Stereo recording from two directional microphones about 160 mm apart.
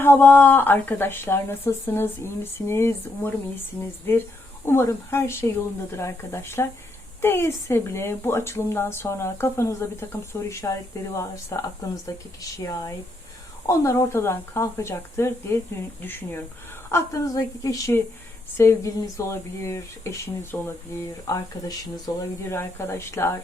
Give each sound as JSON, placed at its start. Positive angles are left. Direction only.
{"t": 0.0, "sound": "a woman's voice", "side_deg": 15}